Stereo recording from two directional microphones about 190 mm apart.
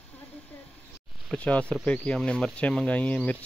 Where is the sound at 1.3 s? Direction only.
5° left (ahead or behind).